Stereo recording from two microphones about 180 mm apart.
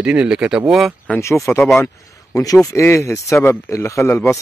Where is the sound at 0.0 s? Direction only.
5° right (ahead or behind).